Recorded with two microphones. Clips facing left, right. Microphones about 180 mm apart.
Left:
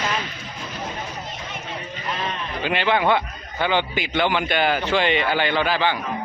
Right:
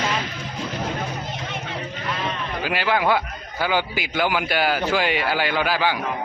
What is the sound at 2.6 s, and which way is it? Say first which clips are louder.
A man's voice: left 1 dB; 5° right (ahead or behind).